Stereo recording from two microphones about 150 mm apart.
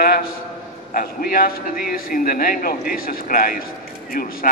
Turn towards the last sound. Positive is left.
turn(degrees=75)  # may be behind; listen again after turning